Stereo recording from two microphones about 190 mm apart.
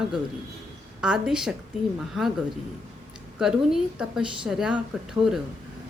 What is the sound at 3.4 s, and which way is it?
A woman's voice, 5° right (ahead or behind).